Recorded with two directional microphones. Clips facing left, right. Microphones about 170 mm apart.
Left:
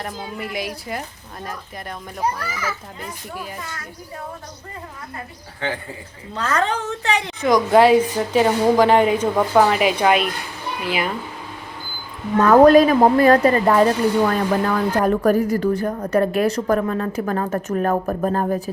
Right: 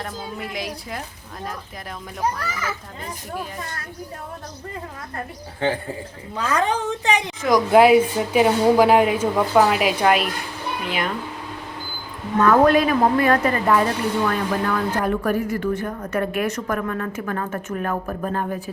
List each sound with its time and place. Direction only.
0.0 s a woman's voice: centre (ahead or behind)
6.3 s a woman's voice: 10° right (ahead or behind)
7.4 s a woman's voice: centre (ahead or behind)
12.4 s speech: 40° left (ahead or behind)